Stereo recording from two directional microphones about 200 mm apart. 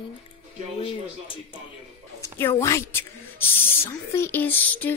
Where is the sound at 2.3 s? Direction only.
15° left (ahead or behind).